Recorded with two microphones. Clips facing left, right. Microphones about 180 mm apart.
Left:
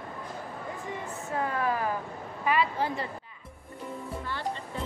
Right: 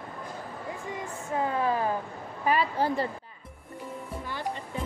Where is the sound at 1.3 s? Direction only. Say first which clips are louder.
Right 2 dB; 20° right (ahead or behind).